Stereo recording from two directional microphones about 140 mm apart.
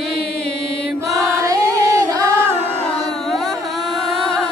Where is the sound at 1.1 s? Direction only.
25° right (ahead or behind).